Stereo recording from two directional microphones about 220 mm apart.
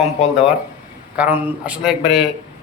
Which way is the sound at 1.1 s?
5° right (ahead or behind).